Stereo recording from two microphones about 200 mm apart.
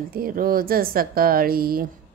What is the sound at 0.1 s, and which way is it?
Speech, 45° right (ahead or behind).